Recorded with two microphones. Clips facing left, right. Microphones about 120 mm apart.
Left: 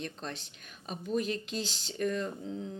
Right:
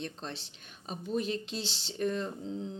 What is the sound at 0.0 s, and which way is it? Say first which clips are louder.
Speech: even; 30° right (ahead or behind).